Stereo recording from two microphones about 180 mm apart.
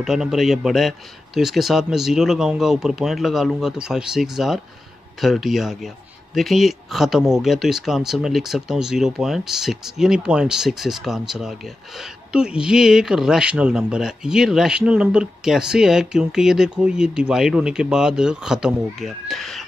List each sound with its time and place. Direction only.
0.0 s a man's voice: 5° right (ahead or behind)